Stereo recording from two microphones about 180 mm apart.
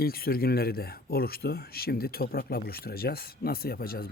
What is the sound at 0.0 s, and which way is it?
Speech, 55° left (ahead or behind).